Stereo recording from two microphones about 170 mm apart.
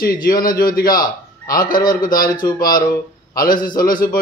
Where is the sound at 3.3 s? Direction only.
55° left (ahead or behind).